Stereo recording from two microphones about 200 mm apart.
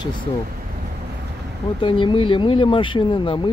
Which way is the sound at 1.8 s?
25° left (ahead or behind).